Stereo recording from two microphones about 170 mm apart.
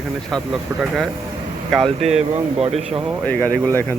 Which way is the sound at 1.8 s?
40° right (ahead or behind).